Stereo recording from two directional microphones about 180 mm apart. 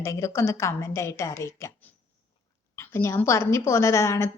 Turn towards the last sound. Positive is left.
turn(degrees=15)  # may be behind; listen again after turning